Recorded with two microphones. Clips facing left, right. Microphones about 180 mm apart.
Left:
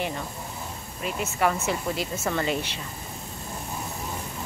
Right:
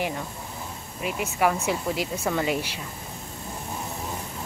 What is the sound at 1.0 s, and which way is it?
Speech, 10° right (ahead or behind).